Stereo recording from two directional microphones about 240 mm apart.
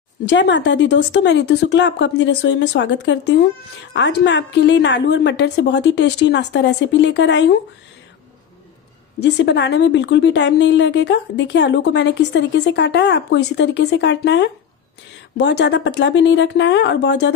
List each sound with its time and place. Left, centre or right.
0.2 s a woman's voice: left
9.2 s a woman's voice: left